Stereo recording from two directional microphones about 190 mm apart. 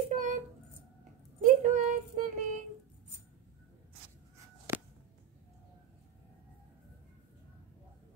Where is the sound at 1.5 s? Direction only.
40° right (ahead or behind).